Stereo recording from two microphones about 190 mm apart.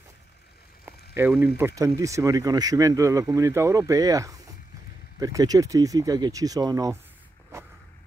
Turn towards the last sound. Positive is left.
turn(degrees=-20)  # may be behind; listen again after turning